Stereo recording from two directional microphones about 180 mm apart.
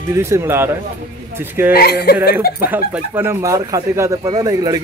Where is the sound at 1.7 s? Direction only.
60° left (ahead or behind).